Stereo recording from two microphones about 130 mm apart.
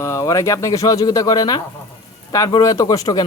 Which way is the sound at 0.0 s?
25° left (ahead or behind).